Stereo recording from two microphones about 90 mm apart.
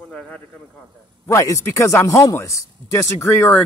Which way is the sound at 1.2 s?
35° left (ahead or behind).